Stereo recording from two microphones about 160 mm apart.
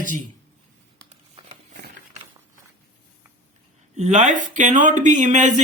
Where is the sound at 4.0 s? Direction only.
45° right (ahead or behind).